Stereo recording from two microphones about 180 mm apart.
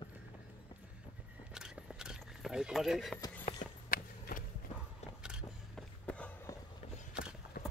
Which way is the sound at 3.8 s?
50° left (ahead or behind).